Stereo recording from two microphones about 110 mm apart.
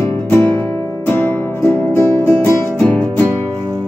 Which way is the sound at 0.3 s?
20° left (ahead or behind).